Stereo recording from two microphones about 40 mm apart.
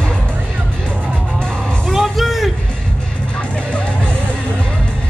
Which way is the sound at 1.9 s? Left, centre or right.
Centre.